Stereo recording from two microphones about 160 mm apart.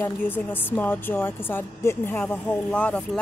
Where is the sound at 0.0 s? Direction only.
10° left (ahead or behind).